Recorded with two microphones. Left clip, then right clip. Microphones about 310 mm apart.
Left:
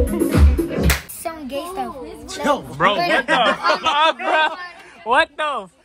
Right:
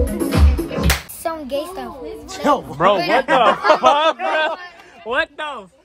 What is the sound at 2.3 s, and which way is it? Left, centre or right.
Music, right.